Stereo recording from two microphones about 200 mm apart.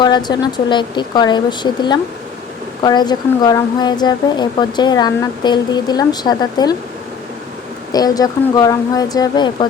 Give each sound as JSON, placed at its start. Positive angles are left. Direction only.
{"t": 0.0, "sound": "speech", "side_deg": 20}
{"t": 7.9, "sound": "speech", "side_deg": 20}